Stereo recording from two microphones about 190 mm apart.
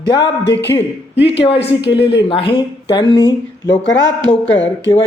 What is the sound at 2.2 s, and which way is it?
A man's voice, 25° left (ahead or behind).